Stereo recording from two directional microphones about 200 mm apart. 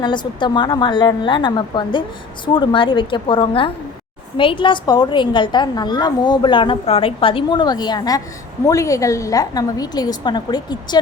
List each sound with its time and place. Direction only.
0.0 s a woman's voice: 20° left (ahead or behind)